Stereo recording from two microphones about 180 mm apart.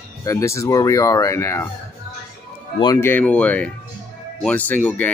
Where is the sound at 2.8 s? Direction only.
15° left (ahead or behind).